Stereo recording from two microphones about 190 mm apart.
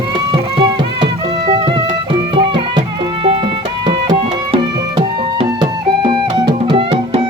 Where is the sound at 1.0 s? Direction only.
30° right (ahead or behind).